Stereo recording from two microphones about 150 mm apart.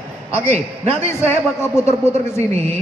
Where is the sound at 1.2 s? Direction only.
20° left (ahead or behind).